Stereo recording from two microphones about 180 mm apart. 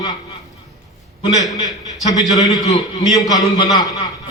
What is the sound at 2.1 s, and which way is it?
A man's voice, 20° left (ahead or behind).